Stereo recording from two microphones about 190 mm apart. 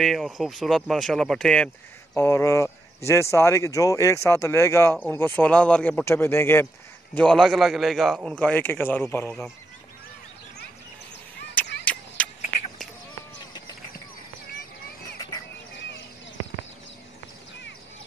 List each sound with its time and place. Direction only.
0.0 s a man's voice: centre (ahead or behind)
2.1 s a man's voice: 15° left (ahead or behind)
11.8 s a sound: 5° left (ahead or behind)
15.1 s bird: 20° left (ahead or behind)